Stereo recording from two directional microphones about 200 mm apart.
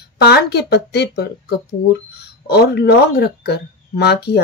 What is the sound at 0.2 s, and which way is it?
Speech, 55° left (ahead or behind).